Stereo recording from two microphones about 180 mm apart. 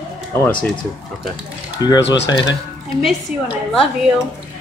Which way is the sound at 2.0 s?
80° left.